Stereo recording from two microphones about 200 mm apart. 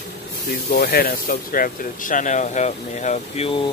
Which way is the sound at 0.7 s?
50° left (ahead or behind).